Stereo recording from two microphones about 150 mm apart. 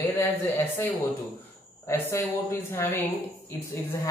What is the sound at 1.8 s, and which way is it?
A woman's voice, 15° left (ahead or behind).